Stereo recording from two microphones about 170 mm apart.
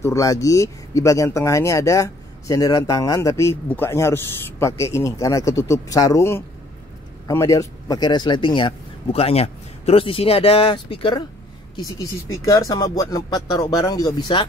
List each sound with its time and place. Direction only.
0.0 s speech: 20° left (ahead or behind)
12.4 s speech: 20° left (ahead or behind)